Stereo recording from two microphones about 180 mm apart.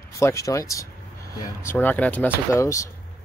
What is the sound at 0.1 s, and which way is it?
Speech, 15° left (ahead or behind).